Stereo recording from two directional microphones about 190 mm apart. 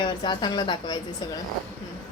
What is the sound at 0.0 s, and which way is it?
A woman's voice, 25° left (ahead or behind).